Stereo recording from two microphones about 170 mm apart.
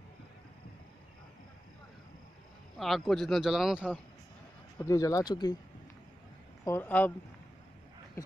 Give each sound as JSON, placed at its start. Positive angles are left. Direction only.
{"t": 2.8, "sound": "speech", "side_deg": 0}
{"t": 4.7, "sound": "speech", "side_deg": 20}
{"t": 6.6, "sound": "speech", "side_deg": 15}